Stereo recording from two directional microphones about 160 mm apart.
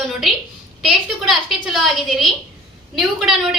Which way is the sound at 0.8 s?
Centre (ahead or behind).